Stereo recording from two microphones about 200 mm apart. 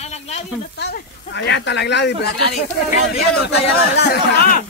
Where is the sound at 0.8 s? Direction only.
60° left (ahead or behind).